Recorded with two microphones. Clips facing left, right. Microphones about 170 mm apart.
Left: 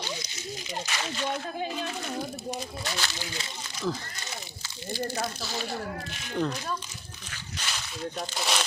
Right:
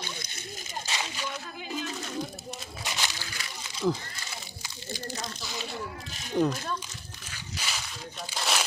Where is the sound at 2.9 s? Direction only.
15° right (ahead or behind).